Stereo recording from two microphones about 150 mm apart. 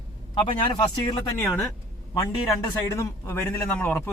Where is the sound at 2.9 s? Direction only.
15° left (ahead or behind).